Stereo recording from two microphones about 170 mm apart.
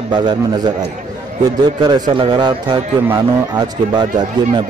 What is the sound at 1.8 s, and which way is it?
A man's voice, 25° right (ahead or behind).